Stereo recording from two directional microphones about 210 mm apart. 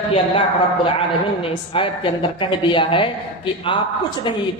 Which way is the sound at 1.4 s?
25° left (ahead or behind).